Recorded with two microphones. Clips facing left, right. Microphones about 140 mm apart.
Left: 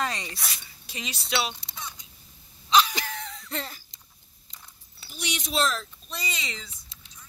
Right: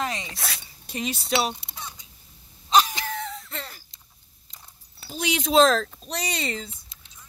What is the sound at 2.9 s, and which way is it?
Cough, centre (ahead or behind).